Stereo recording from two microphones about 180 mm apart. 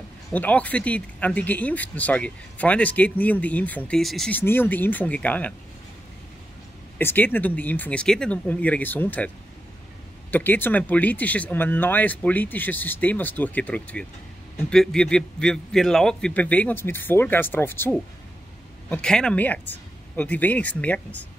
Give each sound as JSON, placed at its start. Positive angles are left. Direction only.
{"t": 0.3, "sound": "speech", "side_deg": 10}
{"t": 7.0, "sound": "speech", "side_deg": 10}
{"t": 10.3, "sound": "speech", "side_deg": 10}